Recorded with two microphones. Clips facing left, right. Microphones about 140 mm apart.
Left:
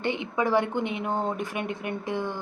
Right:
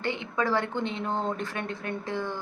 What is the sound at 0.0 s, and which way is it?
Speech, 20° left (ahead or behind).